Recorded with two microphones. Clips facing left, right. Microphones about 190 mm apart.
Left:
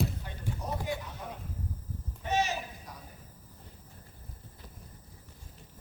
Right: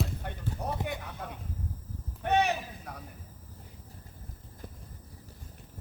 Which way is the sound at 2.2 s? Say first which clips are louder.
Right 4 dB; 60° right (ahead or behind).